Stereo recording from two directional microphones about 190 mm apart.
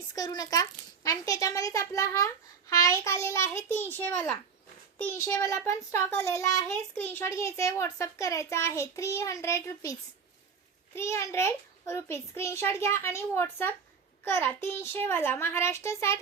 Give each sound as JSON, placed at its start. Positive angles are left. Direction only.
{"t": 0.2, "sound": "child singing", "side_deg": 20}